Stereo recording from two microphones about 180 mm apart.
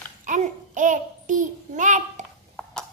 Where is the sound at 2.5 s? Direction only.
5° left (ahead or behind).